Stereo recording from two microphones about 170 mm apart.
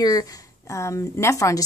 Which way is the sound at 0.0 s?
20° left (ahead or behind).